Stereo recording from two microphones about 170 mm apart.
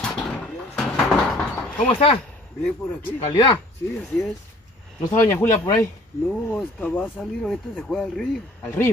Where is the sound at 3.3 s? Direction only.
20° left (ahead or behind).